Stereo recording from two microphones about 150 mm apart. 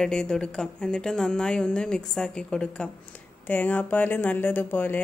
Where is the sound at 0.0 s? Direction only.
5° left (ahead or behind).